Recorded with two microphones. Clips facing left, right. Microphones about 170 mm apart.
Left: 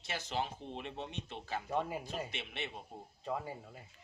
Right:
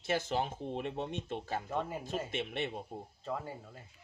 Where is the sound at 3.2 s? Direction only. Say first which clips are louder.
Left 1 dB; 10° left (ahead or behind).